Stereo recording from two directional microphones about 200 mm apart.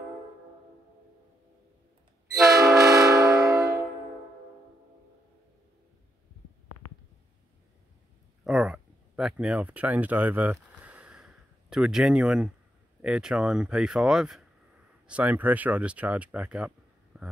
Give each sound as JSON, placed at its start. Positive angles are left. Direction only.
{"t": 2.4, "sound": "train", "side_deg": -20}
{"t": 8.5, "sound": "a sound", "side_deg": -5}
{"t": 13.0, "sound": "speech", "side_deg": -5}